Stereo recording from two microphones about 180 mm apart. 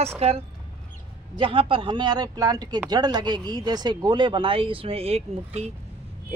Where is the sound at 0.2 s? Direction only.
35° right (ahead or behind).